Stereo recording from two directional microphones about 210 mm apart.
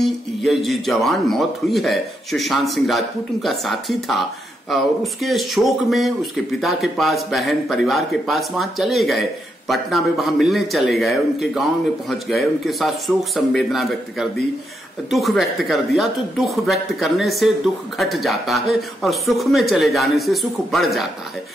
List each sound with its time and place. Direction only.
0.0 s a man's voice: centre (ahead or behind)